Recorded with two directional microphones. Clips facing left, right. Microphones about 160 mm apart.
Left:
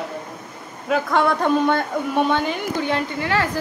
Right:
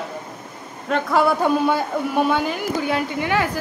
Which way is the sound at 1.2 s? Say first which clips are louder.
Right 2 dB; 5° right (ahead or behind).